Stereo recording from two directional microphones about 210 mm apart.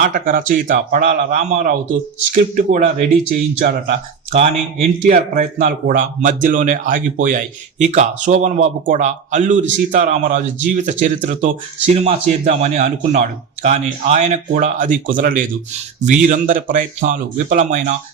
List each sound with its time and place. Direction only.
0.0 s speech: 40° right (ahead or behind)